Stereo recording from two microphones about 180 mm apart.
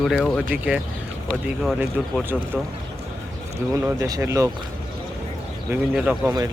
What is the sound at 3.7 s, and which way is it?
Speech, 15° right (ahead or behind).